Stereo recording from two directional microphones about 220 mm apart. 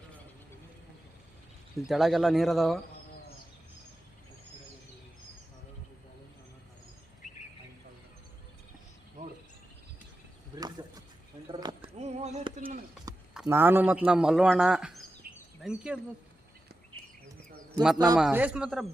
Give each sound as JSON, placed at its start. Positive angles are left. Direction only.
{"t": 1.9, "sound": "a man's voice", "side_deg": 0}
{"t": 11.5, "sound": "a sound", "side_deg": -20}
{"t": 13.3, "sound": "a man's voice", "side_deg": -5}
{"t": 15.2, "sound": "a sound", "side_deg": -45}
{"t": 15.6, "sound": "a man's voice", "side_deg": -5}
{"t": 17.9, "sound": "speech", "side_deg": -15}
{"t": 18.2, "sound": "a man's voice", "side_deg": -5}